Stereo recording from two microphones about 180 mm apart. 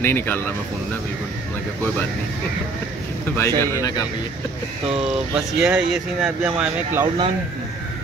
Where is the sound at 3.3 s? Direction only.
15° left (ahead or behind).